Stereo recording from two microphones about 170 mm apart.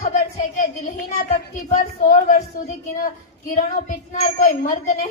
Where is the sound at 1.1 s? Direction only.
40° left (ahead or behind).